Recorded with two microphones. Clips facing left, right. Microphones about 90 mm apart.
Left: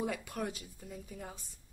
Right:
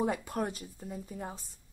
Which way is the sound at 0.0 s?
35° right (ahead or behind).